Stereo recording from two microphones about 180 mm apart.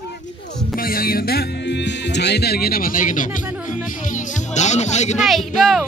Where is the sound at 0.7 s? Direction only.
55° left (ahead or behind).